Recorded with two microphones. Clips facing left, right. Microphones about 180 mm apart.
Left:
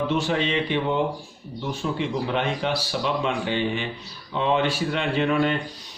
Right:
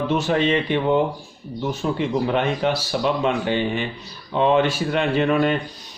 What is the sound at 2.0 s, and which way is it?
Speech, 45° right (ahead or behind).